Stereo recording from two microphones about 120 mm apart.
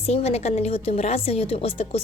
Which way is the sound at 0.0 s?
60° left (ahead or behind).